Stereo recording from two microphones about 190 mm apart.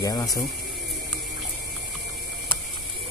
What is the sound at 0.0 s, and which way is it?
Speech, 20° left (ahead or behind).